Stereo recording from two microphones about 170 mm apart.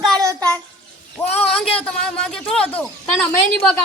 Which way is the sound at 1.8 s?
5° left (ahead or behind).